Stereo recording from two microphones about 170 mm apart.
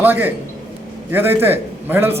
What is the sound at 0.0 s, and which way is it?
A man's voice, 10° right (ahead or behind).